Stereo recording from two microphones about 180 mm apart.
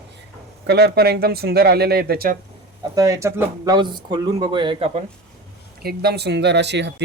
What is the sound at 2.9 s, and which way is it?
Speech, 20° right (ahead or behind).